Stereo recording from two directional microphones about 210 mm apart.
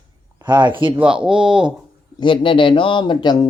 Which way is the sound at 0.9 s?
5° right (ahead or behind).